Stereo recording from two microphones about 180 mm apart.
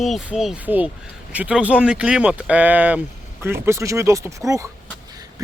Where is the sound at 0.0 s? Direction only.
Centre (ahead or behind); by 4.7 s 15° right (ahead or behind).